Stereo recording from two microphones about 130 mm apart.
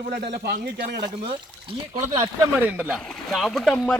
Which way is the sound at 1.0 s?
40° right (ahead or behind).